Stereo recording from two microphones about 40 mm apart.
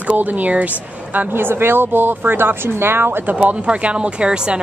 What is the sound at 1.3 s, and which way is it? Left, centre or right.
Speech, right.